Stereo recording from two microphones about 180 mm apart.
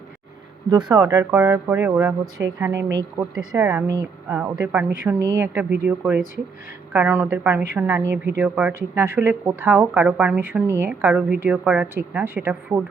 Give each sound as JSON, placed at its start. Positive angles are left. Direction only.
{"t": 0.7, "sound": "speech", "side_deg": -25}